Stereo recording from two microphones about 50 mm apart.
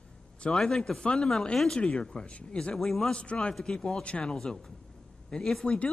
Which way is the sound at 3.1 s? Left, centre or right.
Left.